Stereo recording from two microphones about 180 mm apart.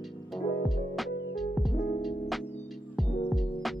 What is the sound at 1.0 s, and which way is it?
Music, centre (ahead or behind).